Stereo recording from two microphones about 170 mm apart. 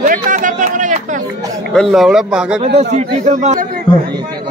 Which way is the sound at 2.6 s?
40° right (ahead or behind).